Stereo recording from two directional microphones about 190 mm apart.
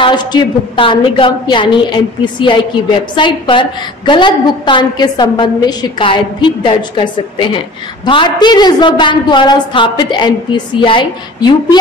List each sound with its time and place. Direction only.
0.0 s a woman's voice: 25° left (ahead or behind)